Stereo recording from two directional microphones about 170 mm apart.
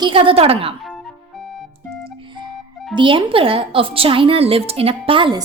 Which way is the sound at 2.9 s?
30° right (ahead or behind).